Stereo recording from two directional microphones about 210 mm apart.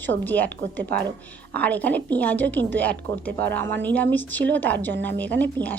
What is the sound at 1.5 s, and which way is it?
A woman's voice, 5° left (ahead or behind).